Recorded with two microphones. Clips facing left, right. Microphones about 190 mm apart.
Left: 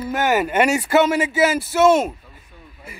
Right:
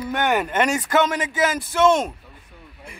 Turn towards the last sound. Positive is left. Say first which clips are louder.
# left 1 dB
turn(degrees=5)  # may be behind; listen again after turning